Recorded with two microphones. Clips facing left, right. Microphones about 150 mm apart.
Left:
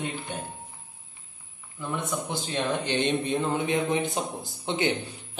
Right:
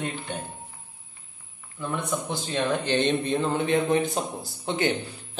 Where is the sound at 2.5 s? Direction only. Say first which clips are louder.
Right 3 dB; 15° left (ahead or behind).